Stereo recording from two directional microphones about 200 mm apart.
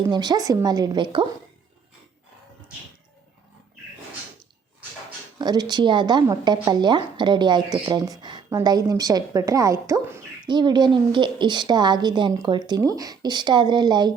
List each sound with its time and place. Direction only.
0.1 s a woman's voice: 20° right (ahead or behind)
5.4 s a woman's voice: 20° right (ahead or behind)